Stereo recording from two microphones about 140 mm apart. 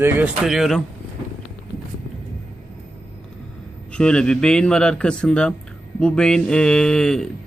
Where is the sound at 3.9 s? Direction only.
5° left (ahead or behind).